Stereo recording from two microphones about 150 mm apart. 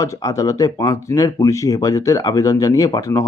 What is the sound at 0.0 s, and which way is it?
Speech, 20° left (ahead or behind).